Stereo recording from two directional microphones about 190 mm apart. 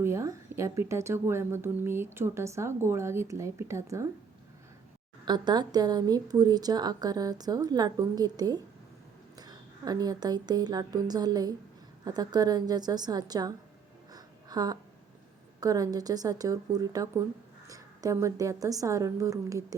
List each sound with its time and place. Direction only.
0.0 s a woman's voice: 15° right (ahead or behind)
5.2 s a woman's voice: 20° right (ahead or behind)
14.1 s a sound: 20° right (ahead or behind)
15.6 s a woman's voice: 20° right (ahead or behind)